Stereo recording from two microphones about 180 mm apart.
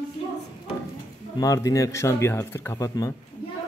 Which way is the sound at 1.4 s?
20° left (ahead or behind).